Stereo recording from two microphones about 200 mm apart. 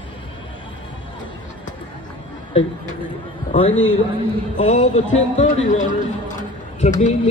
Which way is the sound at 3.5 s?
30° left (ahead or behind).